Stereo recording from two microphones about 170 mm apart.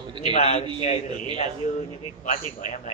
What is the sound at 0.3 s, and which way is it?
Speech, 40° left (ahead or behind).